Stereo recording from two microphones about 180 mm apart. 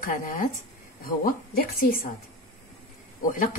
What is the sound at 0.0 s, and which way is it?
A woman's voice, 50° left (ahead or behind).